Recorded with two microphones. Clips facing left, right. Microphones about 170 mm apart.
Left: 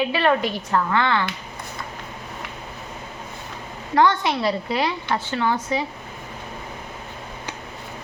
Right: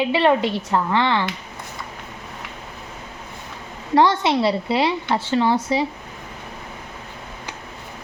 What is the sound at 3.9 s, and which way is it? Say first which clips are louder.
A woman's voice: right 2 dB; 30° right (ahead or behind).